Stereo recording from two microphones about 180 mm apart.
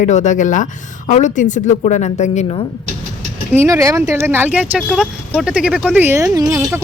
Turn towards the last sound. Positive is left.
turn(degrees=-20)  # may be behind; listen again after turning